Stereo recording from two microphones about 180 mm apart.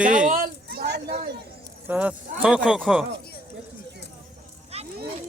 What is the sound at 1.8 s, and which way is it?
Speech, 10° right (ahead or behind).